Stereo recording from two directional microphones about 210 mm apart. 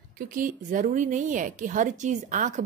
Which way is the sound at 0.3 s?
40° right (ahead or behind).